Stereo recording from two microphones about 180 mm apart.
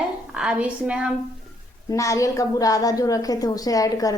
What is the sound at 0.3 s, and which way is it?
Speech, 5° right (ahead or behind).